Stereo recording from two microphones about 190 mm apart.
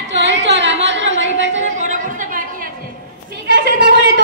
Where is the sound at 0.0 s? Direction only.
65° right (ahead or behind).